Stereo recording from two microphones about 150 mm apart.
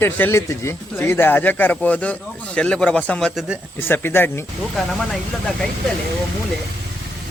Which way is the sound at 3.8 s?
15° left (ahead or behind).